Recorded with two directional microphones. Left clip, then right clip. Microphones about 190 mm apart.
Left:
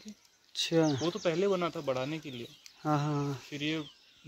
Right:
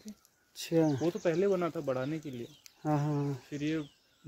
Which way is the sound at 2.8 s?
10° right (ahead or behind).